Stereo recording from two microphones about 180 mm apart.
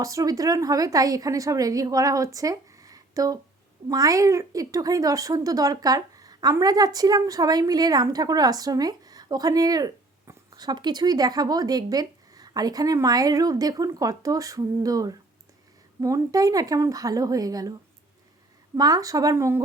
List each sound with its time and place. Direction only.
0.0 s speech: 20° right (ahead or behind)
18.8 s speech: 20° right (ahead or behind)